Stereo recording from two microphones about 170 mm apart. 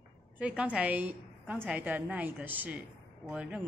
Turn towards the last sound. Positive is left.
turn(degrees=-10)  # may be behind; listen again after turning